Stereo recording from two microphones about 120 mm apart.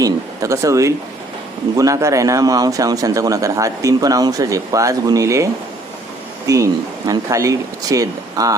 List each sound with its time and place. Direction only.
0.0 s a man's voice: 25° right (ahead or behind)
6.5 s a man's voice: 30° right (ahead or behind)